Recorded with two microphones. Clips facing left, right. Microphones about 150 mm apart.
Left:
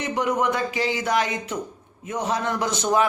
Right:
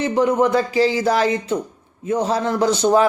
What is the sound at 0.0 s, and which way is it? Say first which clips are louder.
A man's voice: right 6 dB; 30° right (ahead or behind).